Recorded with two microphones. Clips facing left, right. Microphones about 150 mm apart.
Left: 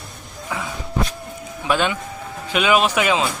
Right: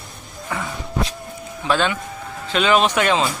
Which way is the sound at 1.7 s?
10° left (ahead or behind).